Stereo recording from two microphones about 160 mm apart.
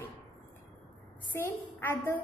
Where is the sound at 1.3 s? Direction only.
15° left (ahead or behind).